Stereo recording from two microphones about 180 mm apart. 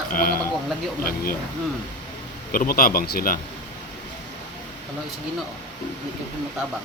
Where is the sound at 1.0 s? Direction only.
55° left (ahead or behind).